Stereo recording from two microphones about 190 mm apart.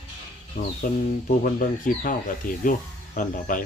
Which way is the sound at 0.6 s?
50° left (ahead or behind).